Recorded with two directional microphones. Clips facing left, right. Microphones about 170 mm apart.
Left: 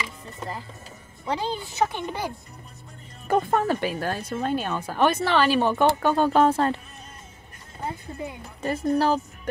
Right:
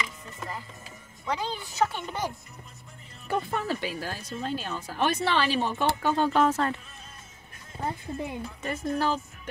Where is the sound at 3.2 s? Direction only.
50° left (ahead or behind); by 6.8 s 30° left (ahead or behind).